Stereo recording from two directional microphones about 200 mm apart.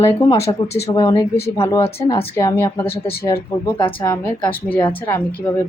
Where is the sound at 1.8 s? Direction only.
25° left (ahead or behind).